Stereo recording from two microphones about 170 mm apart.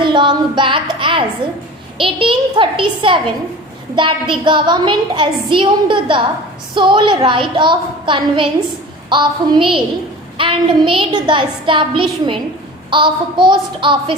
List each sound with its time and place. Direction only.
0.0 s music: 30° right (ahead or behind)
1.4 s a woman's voice: 30° right (ahead or behind)